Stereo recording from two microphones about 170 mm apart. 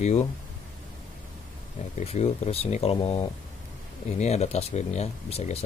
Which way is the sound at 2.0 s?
40° left (ahead or behind).